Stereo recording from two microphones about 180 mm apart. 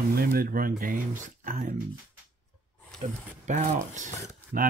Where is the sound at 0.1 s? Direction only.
55° right (ahead or behind).